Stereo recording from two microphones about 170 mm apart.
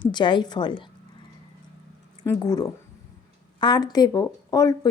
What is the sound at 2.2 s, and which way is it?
Speech, 20° left (ahead or behind).